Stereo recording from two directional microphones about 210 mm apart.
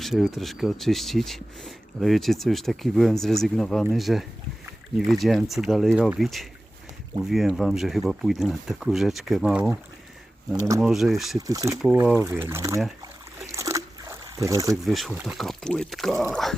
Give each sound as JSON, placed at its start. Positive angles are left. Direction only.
{"t": 0.0, "sound": "speech", "side_deg": 0}
{"t": 10.8, "sound": "speech", "side_deg": 0}
{"t": 11.3, "sound": "speech", "side_deg": -15}
{"t": 11.8, "sound": "speech", "side_deg": -5}
{"t": 13.5, "sound": "a sound", "side_deg": -15}
{"t": 14.8, "sound": "speech", "side_deg": 0}